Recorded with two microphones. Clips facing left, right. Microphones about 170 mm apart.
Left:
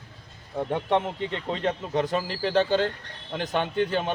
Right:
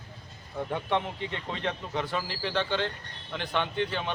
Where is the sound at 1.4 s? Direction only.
40° left (ahead or behind).